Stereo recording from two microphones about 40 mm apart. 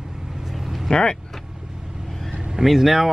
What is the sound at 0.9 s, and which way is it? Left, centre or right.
Vehicle, left.